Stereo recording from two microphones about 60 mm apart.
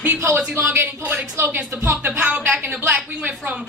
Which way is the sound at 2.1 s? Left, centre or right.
Right.